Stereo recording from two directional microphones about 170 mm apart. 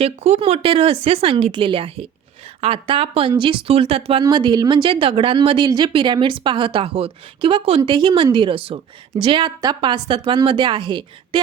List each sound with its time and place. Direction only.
0.0 s a woman's voice: 35° right (ahead or behind)